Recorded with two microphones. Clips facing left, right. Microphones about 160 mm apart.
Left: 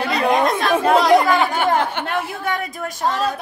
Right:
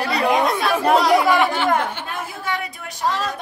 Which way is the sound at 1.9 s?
65° left (ahead or behind).